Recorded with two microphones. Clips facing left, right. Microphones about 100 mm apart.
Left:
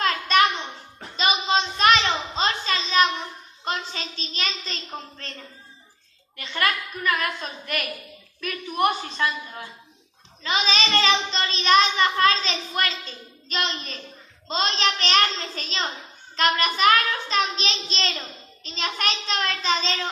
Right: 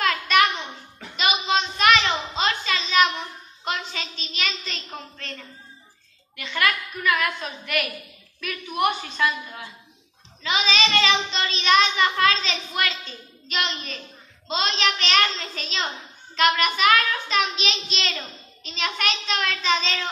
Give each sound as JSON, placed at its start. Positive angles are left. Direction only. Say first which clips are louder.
{"t": 0.0, "sound": "a sound", "louder": "even", "side_deg": 30}
{"t": 3.6, "sound": "a woman's voice", "louder": "even", "side_deg": 35}
{"t": 6.3, "sound": "a child's voice", "louder": "right 1 dB", "side_deg": 35}